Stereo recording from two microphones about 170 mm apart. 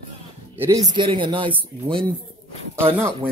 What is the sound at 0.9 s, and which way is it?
Speech, 30° right (ahead or behind).